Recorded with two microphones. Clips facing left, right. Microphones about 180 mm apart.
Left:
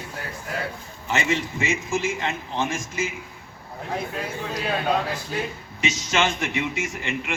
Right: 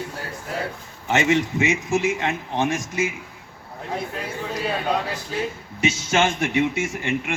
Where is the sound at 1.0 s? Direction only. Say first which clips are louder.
Right 5 dB; 65° right (ahead or behind).